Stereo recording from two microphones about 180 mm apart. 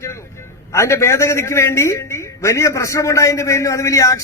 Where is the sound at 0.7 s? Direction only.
15° left (ahead or behind).